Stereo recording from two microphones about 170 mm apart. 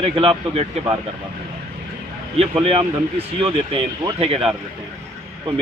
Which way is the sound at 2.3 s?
35° right (ahead or behind).